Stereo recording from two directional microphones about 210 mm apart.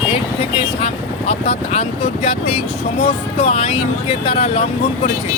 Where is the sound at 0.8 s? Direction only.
30° left (ahead or behind).